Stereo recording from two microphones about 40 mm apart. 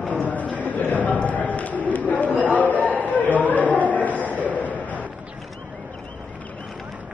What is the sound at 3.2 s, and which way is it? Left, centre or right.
Chatter, left.